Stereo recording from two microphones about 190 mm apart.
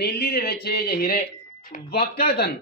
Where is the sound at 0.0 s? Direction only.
55° left (ahead or behind).